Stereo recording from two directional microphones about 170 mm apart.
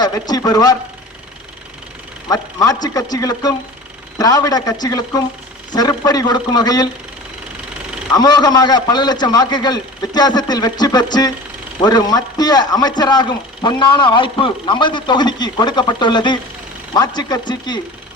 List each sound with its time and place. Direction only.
0.0 s speech: 25° left (ahead or behind)
2.2 s speech: 20° left (ahead or behind)
8.1 s speech: 25° left (ahead or behind)